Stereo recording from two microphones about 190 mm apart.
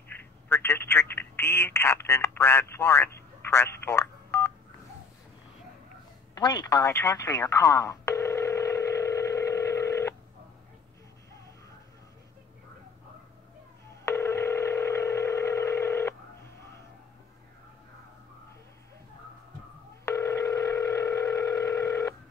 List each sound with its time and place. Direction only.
0.1 s telephone: 10° left (ahead or behind)
6.3 s telephone: 20° left (ahead or behind)
14.0 s dial tone: 15° left (ahead or behind)
20.1 s dial tone: 15° left (ahead or behind)